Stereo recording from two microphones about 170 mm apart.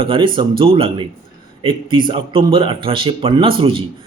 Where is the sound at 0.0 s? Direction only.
30° right (ahead or behind).